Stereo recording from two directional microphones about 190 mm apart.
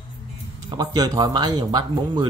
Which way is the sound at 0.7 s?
20° right (ahead or behind).